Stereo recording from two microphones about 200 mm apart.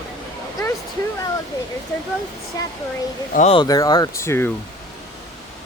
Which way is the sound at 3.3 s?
35° left (ahead or behind).